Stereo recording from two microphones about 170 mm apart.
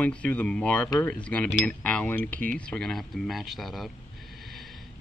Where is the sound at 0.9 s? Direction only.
20° left (ahead or behind).